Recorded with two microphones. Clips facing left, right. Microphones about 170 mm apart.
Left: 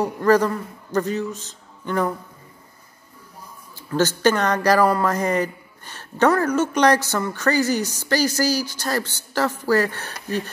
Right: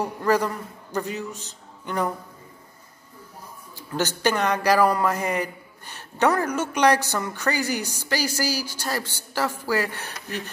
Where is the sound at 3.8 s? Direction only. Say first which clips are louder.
Left 6 dB; 15° right (ahead or behind).